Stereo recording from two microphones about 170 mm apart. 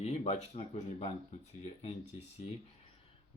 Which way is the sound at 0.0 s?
40° left (ahead or behind).